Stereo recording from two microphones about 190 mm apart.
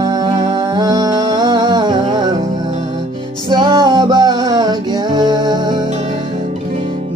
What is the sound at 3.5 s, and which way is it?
Music, 25° right (ahead or behind).